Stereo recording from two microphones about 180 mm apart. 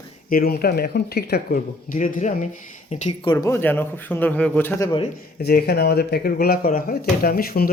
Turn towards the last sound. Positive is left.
turn(degrees=55)  # may be behind; listen again after turning